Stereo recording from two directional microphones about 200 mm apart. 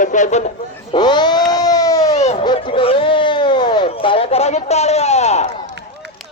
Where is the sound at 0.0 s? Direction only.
40° left (ahead or behind).